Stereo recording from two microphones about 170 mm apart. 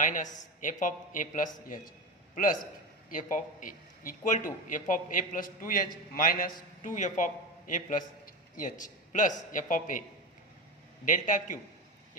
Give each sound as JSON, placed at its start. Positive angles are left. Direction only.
{"t": 0.0, "sound": "a man's voice", "side_deg": 50}
{"t": 11.0, "sound": "speech", "side_deg": 50}